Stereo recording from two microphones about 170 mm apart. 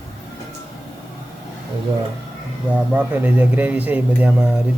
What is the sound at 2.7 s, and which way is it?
Speech, 10° right (ahead or behind).